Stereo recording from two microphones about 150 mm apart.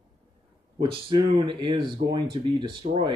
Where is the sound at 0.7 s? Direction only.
35° right (ahead or behind).